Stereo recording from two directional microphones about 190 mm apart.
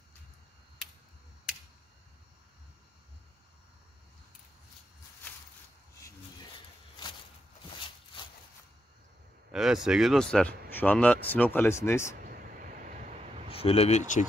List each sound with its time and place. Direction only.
9.5 s speech: 5° right (ahead or behind); by 12.2 s 15° left (ahead or behind)
12.3 s vehicle: 45° right (ahead or behind)
13.5 s speech: 30° left (ahead or behind)